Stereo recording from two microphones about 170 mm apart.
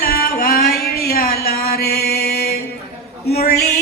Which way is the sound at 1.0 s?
65° left (ahead or behind).